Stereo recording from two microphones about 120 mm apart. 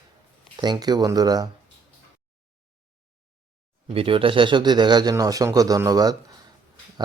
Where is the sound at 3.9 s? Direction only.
50° right (ahead or behind); by 6.1 s 30° right (ahead or behind).